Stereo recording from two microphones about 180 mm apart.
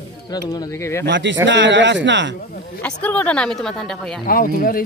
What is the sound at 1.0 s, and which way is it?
Speech, 85° right.